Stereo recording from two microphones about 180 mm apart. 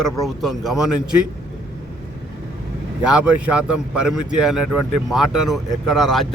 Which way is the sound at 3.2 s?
5° right (ahead or behind).